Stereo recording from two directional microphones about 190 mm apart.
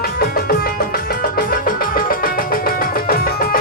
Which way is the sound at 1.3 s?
50° left (ahead or behind).